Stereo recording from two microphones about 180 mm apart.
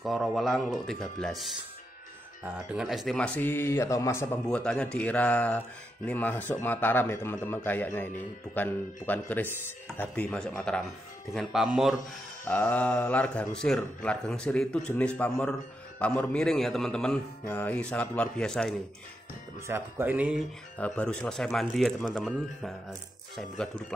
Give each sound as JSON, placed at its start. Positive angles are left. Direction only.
{"t": 0.0, "sound": "a man's voice", "side_deg": 0}
{"t": 2.7, "sound": "a man's voice", "side_deg": 0}
{"t": 12.4, "sound": "a man's voice", "side_deg": 5}
{"t": 19.7, "sound": "speech", "side_deg": -10}
{"t": 20.7, "sound": "a man's voice", "side_deg": 5}